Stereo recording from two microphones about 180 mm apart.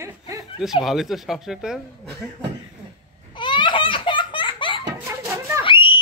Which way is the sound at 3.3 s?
25° left (ahead or behind).